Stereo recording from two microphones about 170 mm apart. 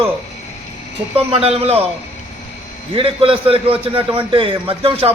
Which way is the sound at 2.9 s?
35° right (ahead or behind).